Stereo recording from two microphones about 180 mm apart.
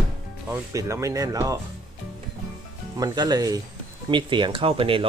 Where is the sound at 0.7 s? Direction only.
15° right (ahead or behind).